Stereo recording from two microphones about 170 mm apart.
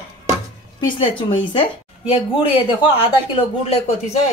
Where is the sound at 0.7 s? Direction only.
30° left (ahead or behind).